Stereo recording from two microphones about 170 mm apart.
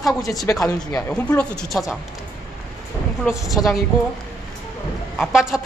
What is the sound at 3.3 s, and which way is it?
Speech, centre (ahead or behind).